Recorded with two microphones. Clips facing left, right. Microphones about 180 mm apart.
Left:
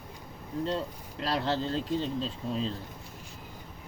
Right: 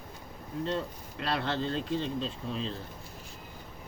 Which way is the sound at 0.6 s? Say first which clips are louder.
Even; 35° left (ahead or behind).